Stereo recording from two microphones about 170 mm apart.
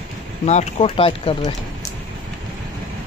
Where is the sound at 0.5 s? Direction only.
35° left (ahead or behind).